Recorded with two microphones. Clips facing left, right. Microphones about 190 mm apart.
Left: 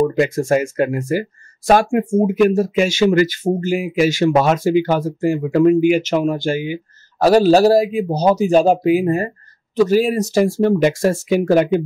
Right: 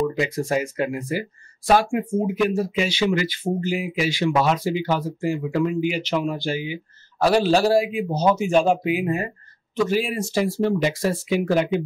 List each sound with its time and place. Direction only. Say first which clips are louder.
0.0 s speech: left 7 dB; 50° left (ahead or behind)